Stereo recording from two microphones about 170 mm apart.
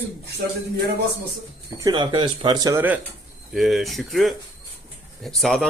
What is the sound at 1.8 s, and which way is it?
A man's voice, 25° right (ahead or behind).